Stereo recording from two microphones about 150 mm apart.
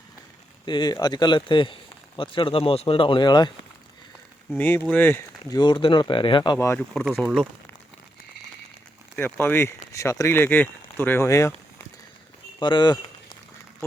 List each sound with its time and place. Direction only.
0.6 s speech: 30° left (ahead or behind)
4.5 s speech: 10° left (ahead or behind)
5.5 s speech: 30° left (ahead or behind)
7.2 s speech: centre (ahead or behind)
9.1 s speech: 15° left (ahead or behind)
12.5 s speech: 30° left (ahead or behind)